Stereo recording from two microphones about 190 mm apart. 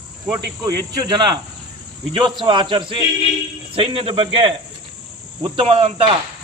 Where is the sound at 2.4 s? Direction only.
25° right (ahead or behind).